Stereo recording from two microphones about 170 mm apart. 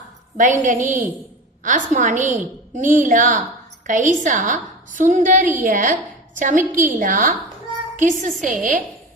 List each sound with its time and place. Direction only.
0.3 s a woman's voice: 50° right (ahead or behind)
8.3 s a woman's voice: centre (ahead or behind)